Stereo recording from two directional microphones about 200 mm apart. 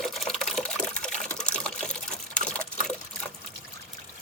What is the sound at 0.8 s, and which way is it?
Water, 5° left (ahead or behind).